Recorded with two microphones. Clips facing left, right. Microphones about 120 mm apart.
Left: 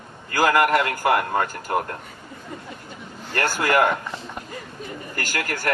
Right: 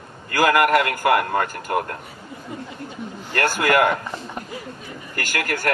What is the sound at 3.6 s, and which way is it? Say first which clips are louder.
Speech: right 1 dB; 20° left (ahead or behind).